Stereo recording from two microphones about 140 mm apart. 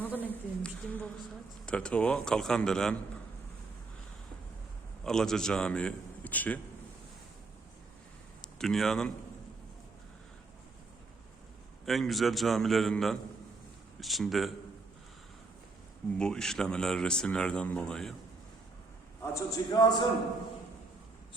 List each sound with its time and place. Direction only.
0.0 s a sound: 15° left (ahead or behind)
1.6 s a man's voice: 5° left (ahead or behind)
5.0 s a man's voice: 5° left (ahead or behind)
8.4 s a man's voice: 5° left (ahead or behind)
11.9 s speech: centre (ahead or behind)
16.1 s speech: 5° left (ahead or behind)
19.2 s a man's voice: 20° left (ahead or behind)